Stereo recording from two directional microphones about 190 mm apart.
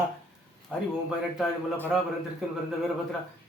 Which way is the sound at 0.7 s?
5° right (ahead or behind).